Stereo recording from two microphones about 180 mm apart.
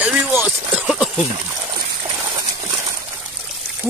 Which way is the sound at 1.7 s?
20° right (ahead or behind).